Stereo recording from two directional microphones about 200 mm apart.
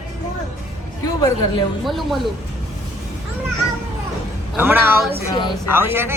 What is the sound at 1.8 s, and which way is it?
Speech, centre (ahead or behind).